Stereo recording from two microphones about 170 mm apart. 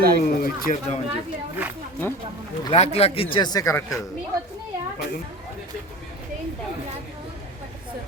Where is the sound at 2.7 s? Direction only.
40° left (ahead or behind); by 3.8 s 20° left (ahead or behind).